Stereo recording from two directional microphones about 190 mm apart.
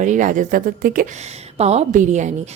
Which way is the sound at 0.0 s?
40° right (ahead or behind).